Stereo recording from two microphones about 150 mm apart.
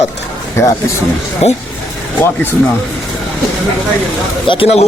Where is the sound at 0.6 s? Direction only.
20° left (ahead or behind).